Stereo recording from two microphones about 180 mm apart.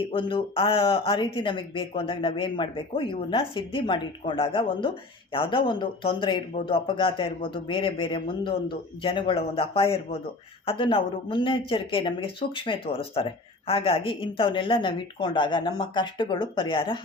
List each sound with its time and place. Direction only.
0.1 s a man's voice: 30° left (ahead or behind)